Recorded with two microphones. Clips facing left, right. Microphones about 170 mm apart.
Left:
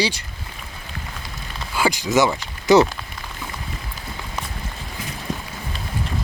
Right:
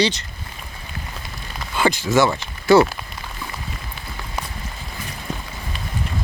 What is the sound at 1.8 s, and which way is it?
Speech, 10° left (ahead or behind).